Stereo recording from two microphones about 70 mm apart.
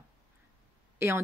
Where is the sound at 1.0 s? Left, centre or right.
Right.